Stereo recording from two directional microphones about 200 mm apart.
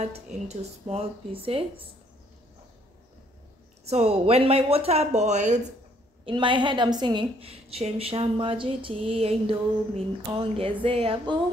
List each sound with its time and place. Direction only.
0.0 s a woman's voice: 30° right (ahead or behind)
3.8 s speech: 30° right (ahead or behind)
6.2 s a woman's voice: 25° right (ahead or behind)